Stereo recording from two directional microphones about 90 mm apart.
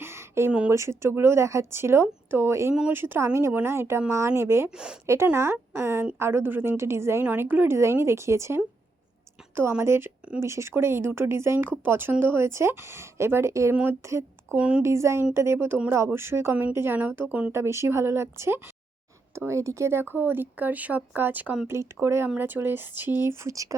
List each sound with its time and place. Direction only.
0.0 s a sound: 30° right (ahead or behind)
0.7 s speech: 30° right (ahead or behind)
4.7 s speech: 10° right (ahead or behind)
5.0 s speech: 30° right (ahead or behind)
7.3 s speech: 20° right (ahead or behind)
14.5 s speech: 10° right (ahead or behind)
14.8 s speech: 30° right (ahead or behind); by 17.5 s 15° right (ahead or behind)
17.5 s speech: 30° right (ahead or behind); by 21.7 s 15° right (ahead or behind)
21.7 s speech: 30° right (ahead or behind)